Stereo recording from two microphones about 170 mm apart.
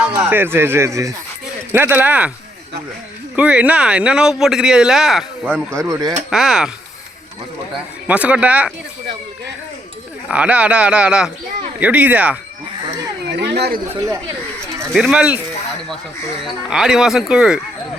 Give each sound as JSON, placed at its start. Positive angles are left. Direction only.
{"t": 0.0, "sound": "speech", "side_deg": -10}
{"t": 3.3, "sound": "speech", "side_deg": -5}
{"t": 5.8, "sound": "speech", "side_deg": -20}
{"t": 6.3, "sound": "speech", "side_deg": -5}
{"t": 8.0, "sound": "speech", "side_deg": -10}
{"t": 10.2, "sound": "speech", "side_deg": -5}
{"t": 13.2, "sound": "speech", "side_deg": -90}
{"t": 14.8, "sound": "speech", "side_deg": 0}
{"t": 16.4, "sound": "speech", "side_deg": -5}